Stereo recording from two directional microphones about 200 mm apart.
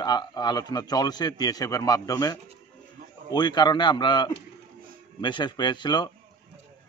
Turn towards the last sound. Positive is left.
turn(degrees=20)  # may be behind; listen again after turning